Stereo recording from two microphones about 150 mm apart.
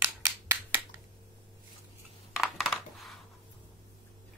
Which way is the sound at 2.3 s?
Centre (ahead or behind).